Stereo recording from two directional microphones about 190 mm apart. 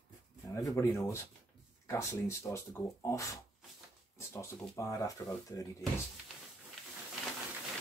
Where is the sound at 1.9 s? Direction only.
15° left (ahead or behind).